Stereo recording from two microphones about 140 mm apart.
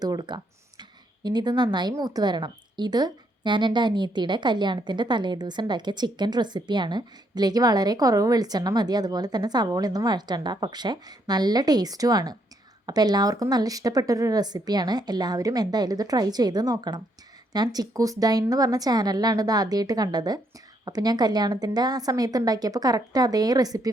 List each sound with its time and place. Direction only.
0.0 s speech: 30° right (ahead or behind)